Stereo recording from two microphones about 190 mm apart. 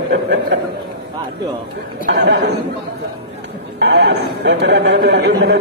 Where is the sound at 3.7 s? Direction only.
60° right (ahead or behind).